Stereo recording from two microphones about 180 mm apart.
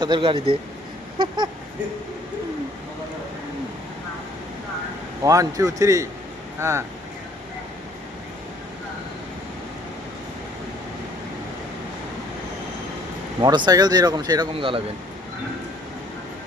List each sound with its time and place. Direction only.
0.0 s speech: 25° right (ahead or behind)
5.2 s a man's voice: 20° right (ahead or behind)
13.4 s speech: 20° right (ahead or behind)